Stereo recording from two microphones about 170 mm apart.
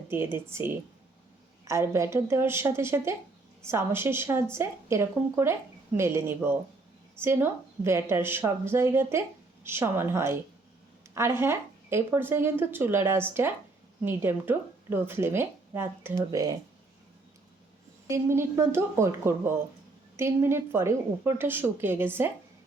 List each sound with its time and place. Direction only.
0.1 s speech: 15° right (ahead or behind)
18.1 s speech: 15° right (ahead or behind)